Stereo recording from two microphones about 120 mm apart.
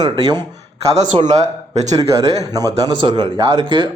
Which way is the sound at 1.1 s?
45° right (ahead or behind).